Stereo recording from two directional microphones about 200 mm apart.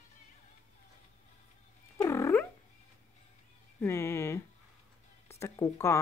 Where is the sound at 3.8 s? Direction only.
15° left (ahead or behind).